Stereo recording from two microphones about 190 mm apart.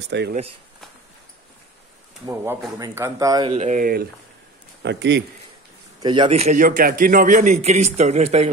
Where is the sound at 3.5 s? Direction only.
40° right (ahead or behind).